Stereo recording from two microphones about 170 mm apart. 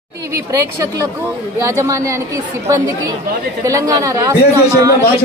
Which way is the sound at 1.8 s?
20° right (ahead or behind).